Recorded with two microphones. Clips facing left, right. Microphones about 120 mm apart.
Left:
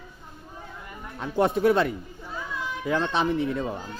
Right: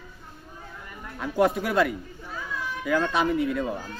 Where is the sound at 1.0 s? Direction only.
25° left (ahead or behind).